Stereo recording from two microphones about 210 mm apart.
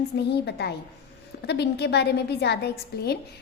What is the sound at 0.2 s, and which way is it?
A woman's voice, 50° left (ahead or behind).